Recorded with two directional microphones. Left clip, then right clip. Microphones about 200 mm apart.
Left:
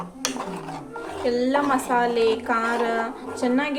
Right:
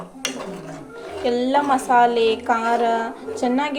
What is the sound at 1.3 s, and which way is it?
A woman's voice, 15° right (ahead or behind).